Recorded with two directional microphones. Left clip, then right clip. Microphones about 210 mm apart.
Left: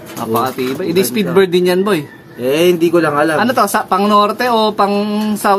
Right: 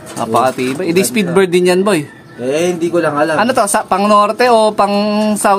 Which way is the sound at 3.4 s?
20° right (ahead or behind).